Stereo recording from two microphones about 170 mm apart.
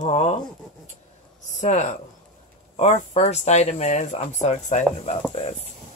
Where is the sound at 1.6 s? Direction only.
45° left (ahead or behind).